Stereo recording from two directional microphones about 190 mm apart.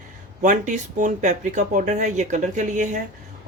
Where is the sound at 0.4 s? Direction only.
40° right (ahead or behind).